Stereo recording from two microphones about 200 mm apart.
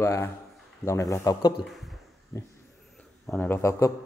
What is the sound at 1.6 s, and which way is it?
Speech, centre (ahead or behind).